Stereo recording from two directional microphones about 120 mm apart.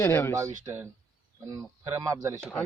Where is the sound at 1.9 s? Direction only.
25° right (ahead or behind).